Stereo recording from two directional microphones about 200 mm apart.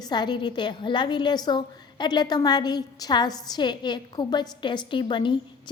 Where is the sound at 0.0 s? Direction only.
20° left (ahead or behind).